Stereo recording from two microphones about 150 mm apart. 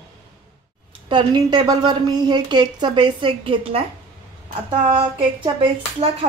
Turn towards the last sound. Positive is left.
turn(degrees=-35)  # may be behind; listen again after turning